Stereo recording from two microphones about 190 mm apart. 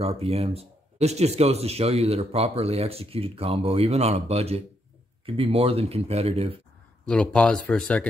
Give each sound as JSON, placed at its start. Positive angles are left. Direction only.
{"t": 0.0, "sound": "speech", "side_deg": -35}
{"t": 7.1, "sound": "speech", "side_deg": 5}